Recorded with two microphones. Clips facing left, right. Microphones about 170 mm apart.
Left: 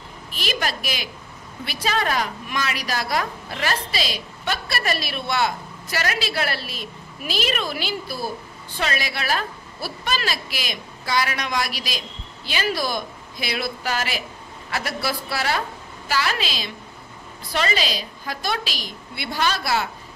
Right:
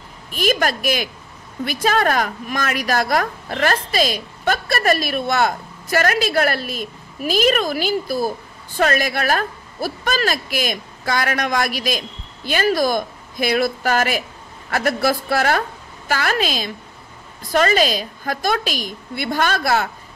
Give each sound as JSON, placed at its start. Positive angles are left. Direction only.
{"t": 0.3, "sound": "a woman's voice", "side_deg": -50}